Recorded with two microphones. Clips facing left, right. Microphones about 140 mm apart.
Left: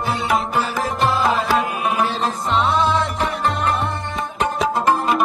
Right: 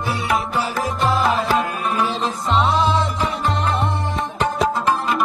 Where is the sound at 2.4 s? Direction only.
Centre (ahead or behind).